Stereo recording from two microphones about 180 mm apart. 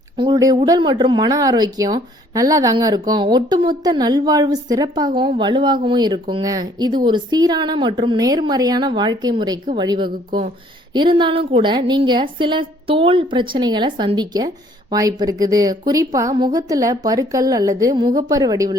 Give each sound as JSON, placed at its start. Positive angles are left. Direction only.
{"t": 0.2, "sound": "speech", "side_deg": -20}